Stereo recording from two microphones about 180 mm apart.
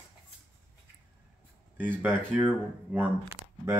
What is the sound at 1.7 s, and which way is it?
Speech, 10° right (ahead or behind).